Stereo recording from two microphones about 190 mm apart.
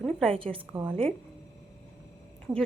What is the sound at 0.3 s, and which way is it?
Speech, 30° right (ahead or behind).